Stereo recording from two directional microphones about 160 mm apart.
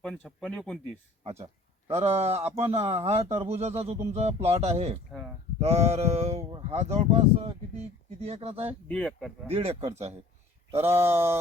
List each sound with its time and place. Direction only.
0.0 s speech: centre (ahead or behind)
2.0 s speech: 40° right (ahead or behind)
8.9 s speech: centre (ahead or behind)
9.5 s speech: 35° right (ahead or behind)
10.8 s a sound: 15° right (ahead or behind)